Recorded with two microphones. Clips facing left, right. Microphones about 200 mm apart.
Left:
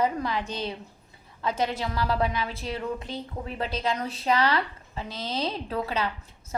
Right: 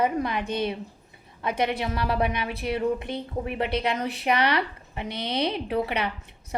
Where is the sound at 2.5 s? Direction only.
60° right (ahead or behind).